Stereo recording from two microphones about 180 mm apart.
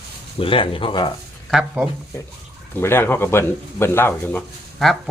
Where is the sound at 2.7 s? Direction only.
10° left (ahead or behind).